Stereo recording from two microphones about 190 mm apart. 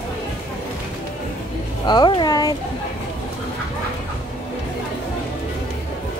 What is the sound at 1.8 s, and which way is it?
Speech, 25° left (ahead or behind).